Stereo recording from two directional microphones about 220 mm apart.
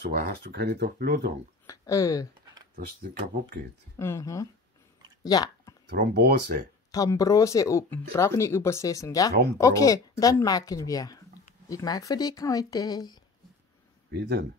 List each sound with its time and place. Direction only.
0.1 s speech: 45° right (ahead or behind)
1.7 s speech: 15° left (ahead or behind)
2.4 s a sound: 15° right (ahead or behind)
3.9 s speech: 10° left (ahead or behind)
5.2 s a sound: 15° left (ahead or behind)
5.9 s speech: 50° right (ahead or behind)
6.9 s speech: 15° left (ahead or behind)